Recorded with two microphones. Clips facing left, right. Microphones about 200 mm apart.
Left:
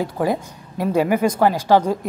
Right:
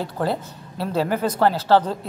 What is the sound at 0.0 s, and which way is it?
A woman's voice, 15° left (ahead or behind).